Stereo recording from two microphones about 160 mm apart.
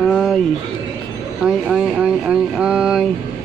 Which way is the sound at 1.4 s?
5° right (ahead or behind).